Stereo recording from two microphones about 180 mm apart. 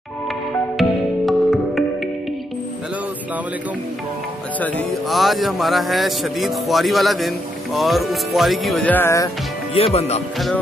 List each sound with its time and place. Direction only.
0.7 s music: centre (ahead or behind)
4.6 s music: 5° left (ahead or behind)
8.9 s speech: 15° left (ahead or behind)
9.8 s speech: 35° left (ahead or behind)